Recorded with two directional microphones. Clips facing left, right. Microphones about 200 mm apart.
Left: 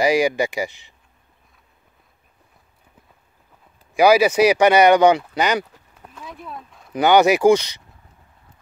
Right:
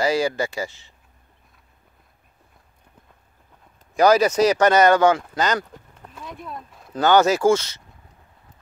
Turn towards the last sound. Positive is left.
turn(degrees=15)  # may be behind; listen again after turning